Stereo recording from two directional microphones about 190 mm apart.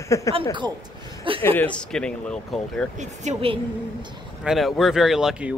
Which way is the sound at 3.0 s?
35° right (ahead or behind).